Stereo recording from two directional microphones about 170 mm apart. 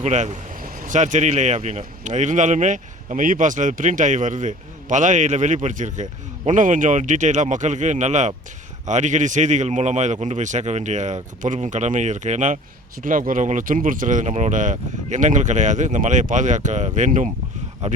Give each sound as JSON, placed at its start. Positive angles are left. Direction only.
{"t": 0.0, "sound": "speech", "side_deg": -45}